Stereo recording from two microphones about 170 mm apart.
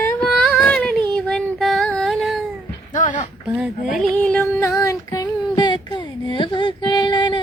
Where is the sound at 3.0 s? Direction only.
50° left (ahead or behind).